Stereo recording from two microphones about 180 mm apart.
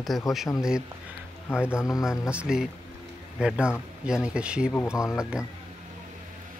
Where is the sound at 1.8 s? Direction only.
20° left (ahead or behind).